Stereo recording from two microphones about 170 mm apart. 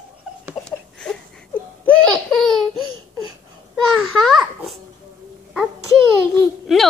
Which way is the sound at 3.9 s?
5° left (ahead or behind).